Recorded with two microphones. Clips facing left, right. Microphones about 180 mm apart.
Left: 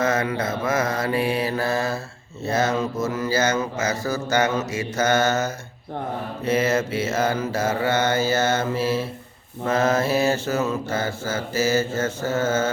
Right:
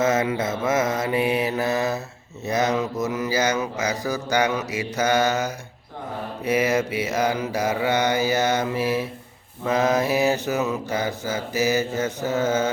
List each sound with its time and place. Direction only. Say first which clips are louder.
0.0 s mantra: right 1 dB; 20° right (ahead or behind)